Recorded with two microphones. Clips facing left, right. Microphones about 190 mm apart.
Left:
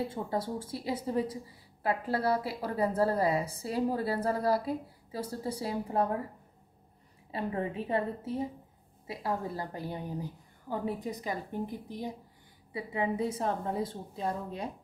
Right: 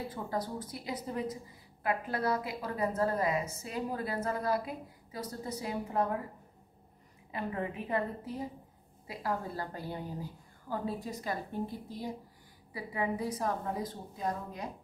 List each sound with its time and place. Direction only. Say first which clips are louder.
0.1 s a woman's voice: left 3 dB; 25° left (ahead or behind)
7.2 s a woman's voice: left 3 dB; 30° left (ahead or behind)